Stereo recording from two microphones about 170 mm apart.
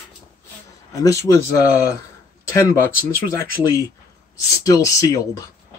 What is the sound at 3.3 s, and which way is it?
Speech, 20° left (ahead or behind).